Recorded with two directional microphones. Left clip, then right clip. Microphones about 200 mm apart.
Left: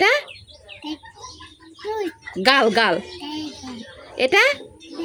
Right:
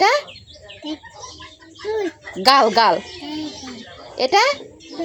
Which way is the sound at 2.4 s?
20° left (ahead or behind).